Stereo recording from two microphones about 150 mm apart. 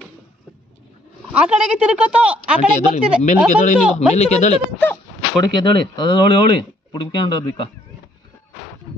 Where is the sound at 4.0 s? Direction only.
45° left (ahead or behind).